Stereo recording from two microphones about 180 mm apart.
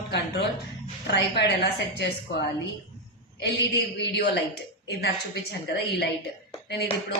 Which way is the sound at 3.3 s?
70° left (ahead or behind).